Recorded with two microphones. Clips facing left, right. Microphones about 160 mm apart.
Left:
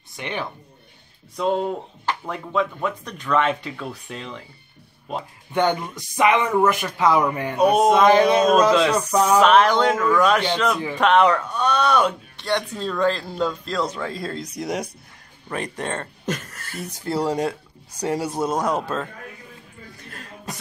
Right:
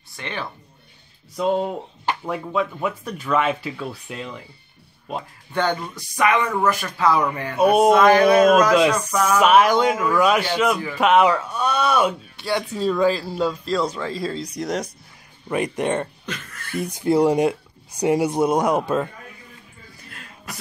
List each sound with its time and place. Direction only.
0.1 s speech: 15° left (ahead or behind)
1.3 s speech: 5° right (ahead or behind)
5.5 s speech: 20° left (ahead or behind)
7.5 s speech: 5° right (ahead or behind)
7.9 s speech: 20° left (ahead or behind)
9.4 s speech: 10° right (ahead or behind)
15.4 s speech: 10° right (ahead or behind)
16.3 s speech: 45° left (ahead or behind)
17.0 s speech: 15° right (ahead or behind)